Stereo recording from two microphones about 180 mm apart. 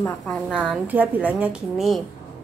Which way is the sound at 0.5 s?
5° right (ahead or behind).